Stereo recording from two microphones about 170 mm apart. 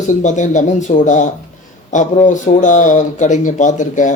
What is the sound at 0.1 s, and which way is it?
A man's voice, 45° left (ahead or behind).